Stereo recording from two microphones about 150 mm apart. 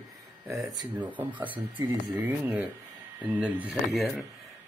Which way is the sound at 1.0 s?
10° right (ahead or behind).